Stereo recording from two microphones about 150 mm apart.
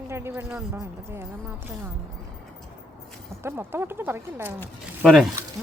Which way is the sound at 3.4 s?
15° right (ahead or behind).